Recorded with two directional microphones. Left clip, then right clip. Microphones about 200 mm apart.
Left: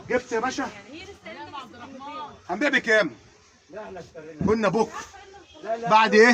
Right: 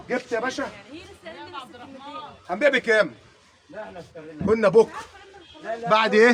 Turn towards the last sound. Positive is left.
turn(degrees=-10)  # may be behind; listen again after turning